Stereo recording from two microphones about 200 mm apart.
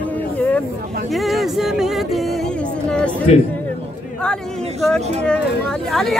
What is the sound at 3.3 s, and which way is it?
Speech, 35° left (ahead or behind).